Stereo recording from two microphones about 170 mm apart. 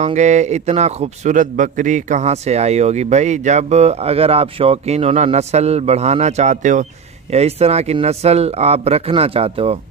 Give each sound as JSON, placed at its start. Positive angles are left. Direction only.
{"t": 0.0, "sound": "a man's voice", "side_deg": -45}